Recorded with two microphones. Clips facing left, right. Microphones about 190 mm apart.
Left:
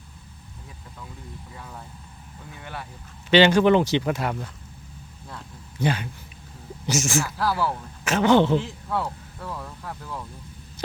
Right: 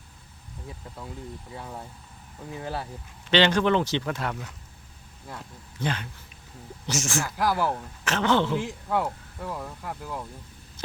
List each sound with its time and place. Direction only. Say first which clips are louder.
1.5 s speech: right 3 dB; 30° right (ahead or behind)
3.2 s speech: left 5 dB; 10° left (ahead or behind)
5.8 s speech: left 5 dB; 10° left (ahead or behind)
7.3 s speech: even; 15° right (ahead or behind)
8.0 s speech: left 5 dB; 10° left (ahead or behind)
8.6 s speech: right 1 dB; 15° right (ahead or behind)
10.8 s hum: left 4 dB; 10° left (ahead or behind)